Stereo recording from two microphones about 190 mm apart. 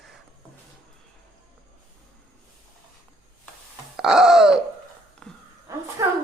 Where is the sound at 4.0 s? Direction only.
Centre (ahead or behind).